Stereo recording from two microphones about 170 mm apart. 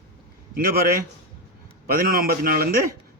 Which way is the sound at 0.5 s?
60° right (ahead or behind).